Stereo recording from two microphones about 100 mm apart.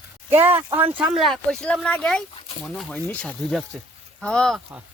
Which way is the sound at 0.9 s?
10° right (ahead or behind).